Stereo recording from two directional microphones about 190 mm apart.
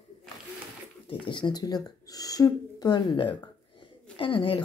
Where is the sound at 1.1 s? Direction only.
25° left (ahead or behind).